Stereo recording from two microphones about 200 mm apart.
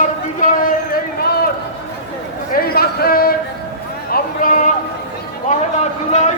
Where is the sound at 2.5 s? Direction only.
50° left (ahead or behind).